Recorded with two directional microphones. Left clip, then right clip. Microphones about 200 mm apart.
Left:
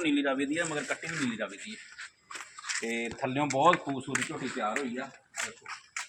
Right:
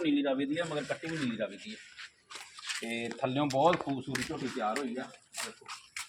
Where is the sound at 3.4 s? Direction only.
5° left (ahead or behind).